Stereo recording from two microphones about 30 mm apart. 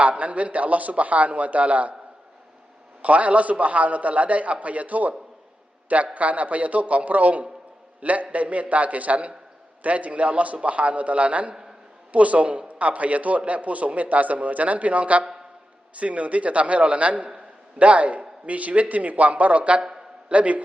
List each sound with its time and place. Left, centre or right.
0.0 s a man's voice: right
3.0 s a man's voice: right
6.1 s a man's voice: right
19.8 s a sound: right
20.3 s a man's voice: right